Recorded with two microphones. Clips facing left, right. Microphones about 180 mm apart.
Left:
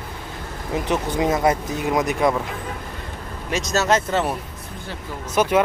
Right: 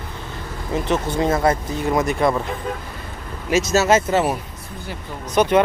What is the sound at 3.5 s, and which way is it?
Speech, 5° right (ahead or behind).